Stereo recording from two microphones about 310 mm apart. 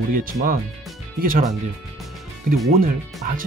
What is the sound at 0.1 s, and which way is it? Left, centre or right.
Speech, right.